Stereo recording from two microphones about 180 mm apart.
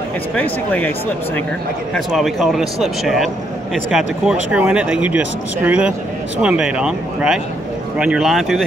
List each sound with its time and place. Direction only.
0.4 s speech: 10° left (ahead or behind)
2.0 s speech: centre (ahead or behind)